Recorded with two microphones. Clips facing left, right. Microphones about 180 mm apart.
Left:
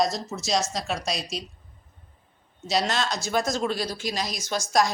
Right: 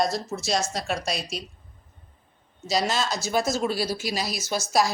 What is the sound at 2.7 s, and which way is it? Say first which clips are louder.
Speech: even; centre (ahead or behind).